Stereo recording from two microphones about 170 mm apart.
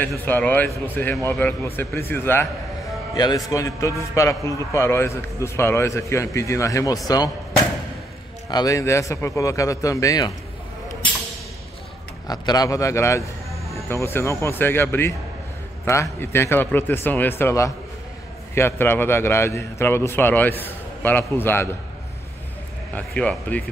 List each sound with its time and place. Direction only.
0.2 s a man's voice: 10° left (ahead or behind)
12.3 s a man's voice: 25° left (ahead or behind)
22.9 s a man's voice: 10° left (ahead or behind)